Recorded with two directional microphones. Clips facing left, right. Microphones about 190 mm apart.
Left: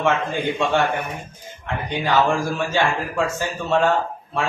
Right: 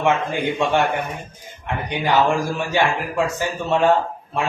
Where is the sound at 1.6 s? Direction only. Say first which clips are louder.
Right 1 dB; 15° right (ahead or behind).